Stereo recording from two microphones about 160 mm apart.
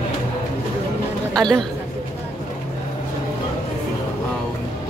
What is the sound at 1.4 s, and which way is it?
Speech, 5° left (ahead or behind).